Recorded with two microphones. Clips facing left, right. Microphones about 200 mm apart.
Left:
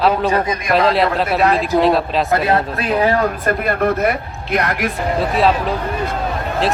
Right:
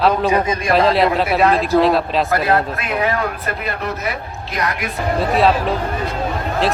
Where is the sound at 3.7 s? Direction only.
55° left (ahead or behind).